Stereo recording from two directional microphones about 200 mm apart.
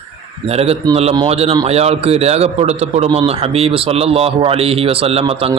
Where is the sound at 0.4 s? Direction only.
30° right (ahead or behind).